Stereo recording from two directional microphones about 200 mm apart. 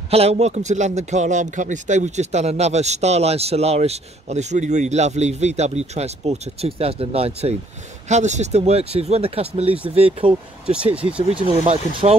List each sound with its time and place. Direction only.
0.1 s a man's voice: 30° right (ahead or behind)
10.7 s speech: 5° right (ahead or behind)
11.2 s speech: 30° right (ahead or behind)